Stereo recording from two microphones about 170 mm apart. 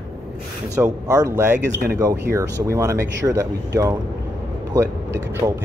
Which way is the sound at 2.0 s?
20° right (ahead or behind).